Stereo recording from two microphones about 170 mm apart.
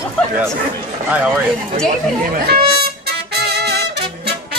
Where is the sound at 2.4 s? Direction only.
70° right (ahead or behind).